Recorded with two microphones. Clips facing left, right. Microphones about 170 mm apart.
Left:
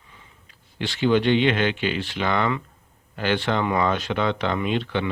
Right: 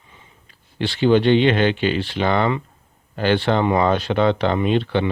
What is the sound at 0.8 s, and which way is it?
Speech, 30° right (ahead or behind).